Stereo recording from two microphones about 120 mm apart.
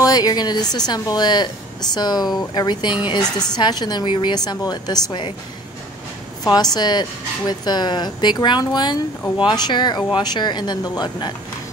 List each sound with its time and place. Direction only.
0.0 s a woman's voice: 30° left (ahead or behind)
6.4 s speech: 35° left (ahead or behind)